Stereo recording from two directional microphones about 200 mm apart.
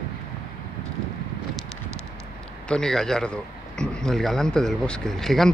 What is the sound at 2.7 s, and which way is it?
A man's voice, 5° left (ahead or behind).